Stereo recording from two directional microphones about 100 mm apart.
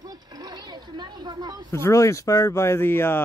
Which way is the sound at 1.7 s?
30° left (ahead or behind).